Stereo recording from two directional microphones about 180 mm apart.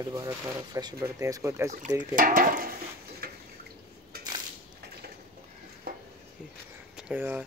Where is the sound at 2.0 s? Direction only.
45° right (ahead or behind).